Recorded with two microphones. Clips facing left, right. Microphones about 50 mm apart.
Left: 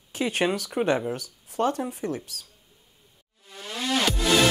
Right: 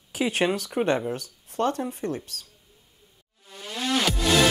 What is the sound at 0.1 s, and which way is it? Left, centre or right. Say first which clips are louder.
Speech: right 1 dB; centre.